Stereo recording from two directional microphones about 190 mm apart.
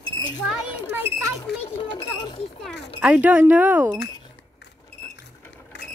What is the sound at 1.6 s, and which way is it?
Speech, 25° left (ahead or behind).